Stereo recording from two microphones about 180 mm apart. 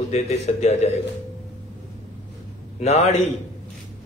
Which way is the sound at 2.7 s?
35° left (ahead or behind).